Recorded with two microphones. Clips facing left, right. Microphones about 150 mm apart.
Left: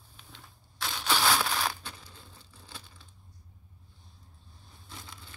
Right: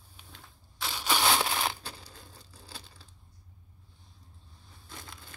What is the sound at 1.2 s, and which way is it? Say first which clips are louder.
Crushing: right 1 dB; 20° right (ahead or behind).